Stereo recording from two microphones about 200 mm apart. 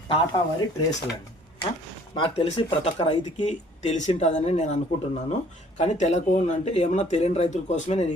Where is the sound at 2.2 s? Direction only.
30° left (ahead or behind).